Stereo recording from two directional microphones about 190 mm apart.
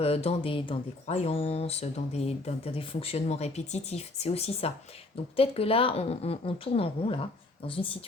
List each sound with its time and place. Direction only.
0.0 s speech: 35° left (ahead or behind)